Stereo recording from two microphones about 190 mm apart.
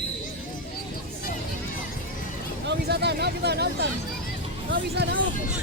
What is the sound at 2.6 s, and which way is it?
Vehicle, 60° right (ahead or behind).